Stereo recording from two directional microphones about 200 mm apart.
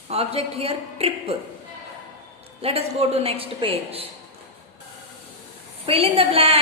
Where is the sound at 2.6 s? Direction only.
30° right (ahead or behind).